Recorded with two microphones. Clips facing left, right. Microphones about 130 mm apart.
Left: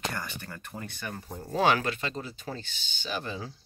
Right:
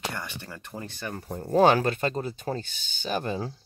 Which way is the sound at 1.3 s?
55° right (ahead or behind).